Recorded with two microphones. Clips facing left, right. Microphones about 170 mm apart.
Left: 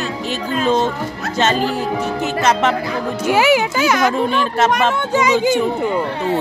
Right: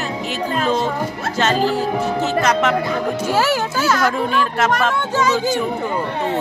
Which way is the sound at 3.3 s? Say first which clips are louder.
Left 7 dB; 15° left (ahead or behind).